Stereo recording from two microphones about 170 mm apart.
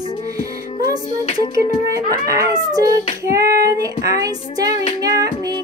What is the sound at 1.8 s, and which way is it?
Speech, 20° right (ahead or behind).